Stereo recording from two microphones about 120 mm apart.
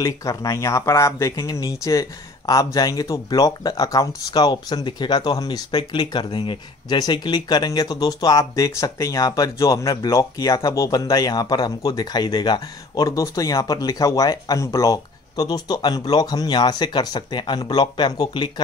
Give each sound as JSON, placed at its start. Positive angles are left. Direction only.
{"t": 0.0, "sound": "speech", "side_deg": 30}